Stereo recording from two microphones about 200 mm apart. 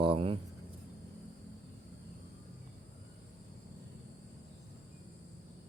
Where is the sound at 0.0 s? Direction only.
25° right (ahead or behind).